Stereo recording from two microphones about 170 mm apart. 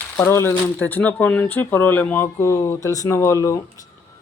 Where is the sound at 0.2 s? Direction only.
15° left (ahead or behind).